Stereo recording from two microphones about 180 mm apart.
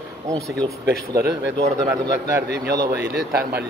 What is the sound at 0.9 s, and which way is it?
Speech, 65° right (ahead or behind).